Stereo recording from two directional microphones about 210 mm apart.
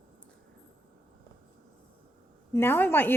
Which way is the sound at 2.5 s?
10° left (ahead or behind).